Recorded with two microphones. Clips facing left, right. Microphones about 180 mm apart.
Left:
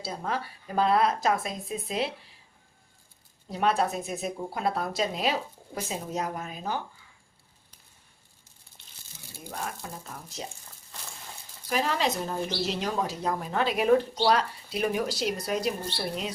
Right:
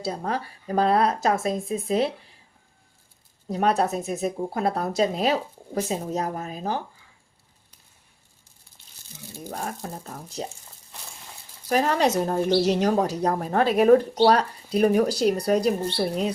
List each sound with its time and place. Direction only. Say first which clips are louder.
0.1 s speech: right 3 dB; 40° right (ahead or behind)
3.5 s speech: right 4 dB; 40° right (ahead or behind)
9.4 s speech: right 4 dB; 40° right (ahead or behind)
11.7 s speech: right 6 dB; 45° right (ahead or behind)